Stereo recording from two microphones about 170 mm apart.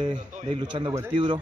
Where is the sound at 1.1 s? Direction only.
30° right (ahead or behind).